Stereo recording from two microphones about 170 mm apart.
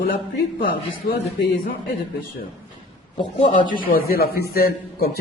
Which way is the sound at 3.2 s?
25° left (ahead or behind).